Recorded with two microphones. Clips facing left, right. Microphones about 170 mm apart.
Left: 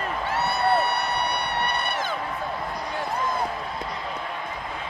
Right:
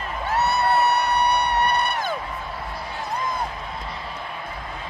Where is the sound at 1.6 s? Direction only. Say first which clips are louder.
Right 4 dB; 40° right (ahead or behind).